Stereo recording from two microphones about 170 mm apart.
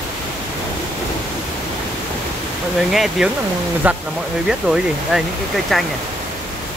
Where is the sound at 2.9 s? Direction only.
Centre (ahead or behind).